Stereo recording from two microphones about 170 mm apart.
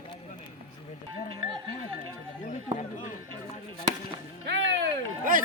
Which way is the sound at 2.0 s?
45° left (ahead or behind).